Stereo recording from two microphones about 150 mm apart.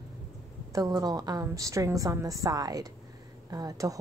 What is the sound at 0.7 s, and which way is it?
A woman's voice, 25° right (ahead or behind).